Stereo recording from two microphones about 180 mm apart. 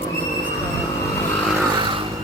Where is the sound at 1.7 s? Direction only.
25° right (ahead or behind).